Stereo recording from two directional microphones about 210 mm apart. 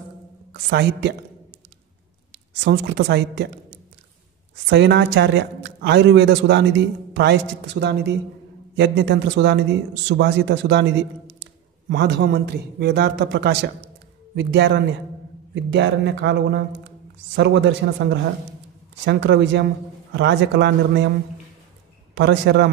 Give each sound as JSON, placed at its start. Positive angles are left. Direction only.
{"t": 0.5, "sound": "a woman's voice", "side_deg": -50}
{"t": 2.3, "sound": "a woman's voice", "side_deg": -55}
{"t": 4.6, "sound": "a man's voice", "side_deg": -55}
{"t": 22.1, "sound": "a man's voice", "side_deg": -55}